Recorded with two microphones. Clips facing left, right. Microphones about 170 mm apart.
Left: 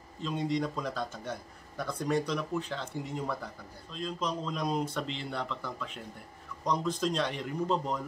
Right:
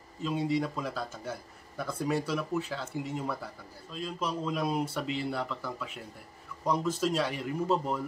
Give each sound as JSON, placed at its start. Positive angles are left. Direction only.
{"t": 0.2, "sound": "a man's voice", "side_deg": -5}